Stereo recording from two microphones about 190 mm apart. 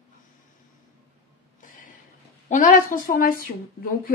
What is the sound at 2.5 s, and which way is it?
Speech, 45° left (ahead or behind).